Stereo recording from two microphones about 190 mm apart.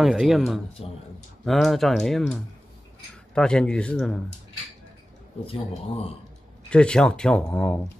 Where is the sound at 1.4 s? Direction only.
Centre (ahead or behind).